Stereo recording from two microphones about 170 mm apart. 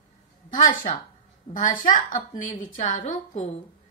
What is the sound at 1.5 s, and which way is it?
A woman's voice, 50° left (ahead or behind).